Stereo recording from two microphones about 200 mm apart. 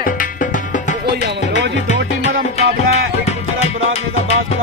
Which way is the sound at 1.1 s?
60° right (ahead or behind).